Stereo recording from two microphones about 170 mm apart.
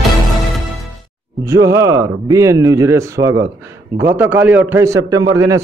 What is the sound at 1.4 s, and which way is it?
A man's voice, 15° right (ahead or behind).